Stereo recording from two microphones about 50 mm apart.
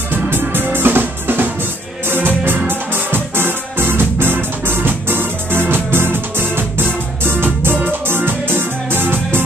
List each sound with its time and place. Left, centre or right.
0.1 s music: right